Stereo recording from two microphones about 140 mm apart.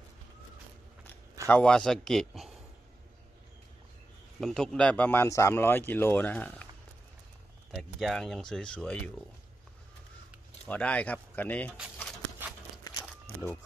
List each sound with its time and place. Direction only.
1.5 s speech: 5° left (ahead or behind)
4.4 s a man's voice: centre (ahead or behind)
7.7 s speech: centre (ahead or behind)
10.7 s a man's voice: 10° left (ahead or behind)
12.9 s a sound: 20° left (ahead or behind)